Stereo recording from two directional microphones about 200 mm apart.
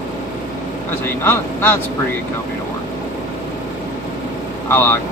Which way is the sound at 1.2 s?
10° left (ahead or behind).